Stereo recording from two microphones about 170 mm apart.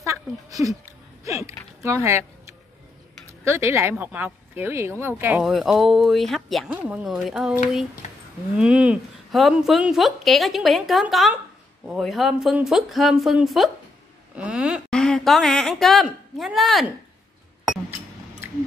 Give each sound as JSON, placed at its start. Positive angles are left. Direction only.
{"t": 0.0, "sound": "speech", "side_deg": -20}
{"t": 3.4, "sound": "speech", "side_deg": -15}
{"t": 5.4, "sound": "a woman's voice", "side_deg": 0}